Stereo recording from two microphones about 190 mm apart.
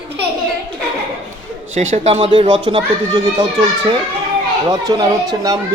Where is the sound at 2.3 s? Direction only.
25° right (ahead or behind).